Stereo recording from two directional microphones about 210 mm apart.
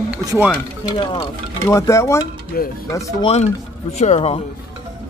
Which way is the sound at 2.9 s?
15° left (ahead or behind).